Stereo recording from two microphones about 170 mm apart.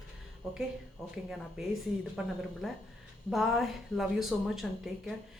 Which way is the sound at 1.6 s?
5° right (ahead or behind).